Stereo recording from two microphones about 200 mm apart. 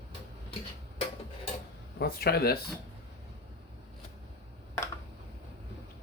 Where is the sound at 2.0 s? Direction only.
50° left (ahead or behind).